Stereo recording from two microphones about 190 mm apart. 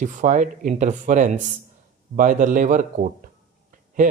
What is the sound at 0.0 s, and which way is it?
Speech, 40° right (ahead or behind).